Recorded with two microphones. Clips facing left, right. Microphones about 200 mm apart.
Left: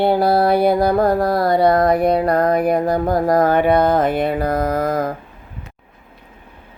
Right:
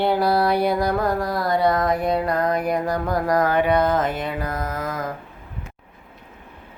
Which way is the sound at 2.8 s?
30° left (ahead or behind).